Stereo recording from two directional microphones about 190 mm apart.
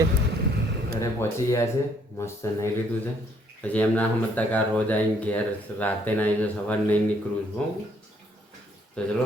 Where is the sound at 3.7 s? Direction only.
10° left (ahead or behind).